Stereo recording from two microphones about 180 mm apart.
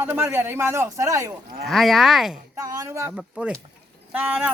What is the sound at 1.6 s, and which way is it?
Speech, centre (ahead or behind).